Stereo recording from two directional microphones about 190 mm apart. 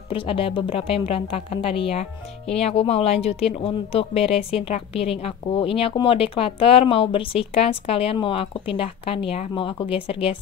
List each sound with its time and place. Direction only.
0.1 s a woman's voice: 30° left (ahead or behind)